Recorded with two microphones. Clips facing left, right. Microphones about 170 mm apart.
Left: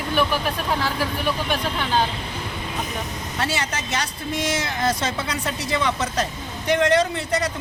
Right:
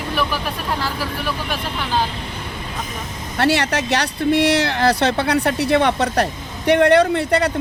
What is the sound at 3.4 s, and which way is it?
Speech, 65° right (ahead or behind).